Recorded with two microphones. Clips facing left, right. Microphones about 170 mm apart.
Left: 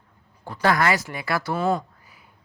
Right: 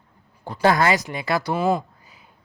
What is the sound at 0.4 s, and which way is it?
Speech, 20° right (ahead or behind).